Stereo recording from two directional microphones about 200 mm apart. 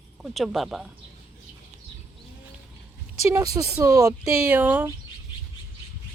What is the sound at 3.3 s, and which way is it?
Speech, 15° right (ahead or behind).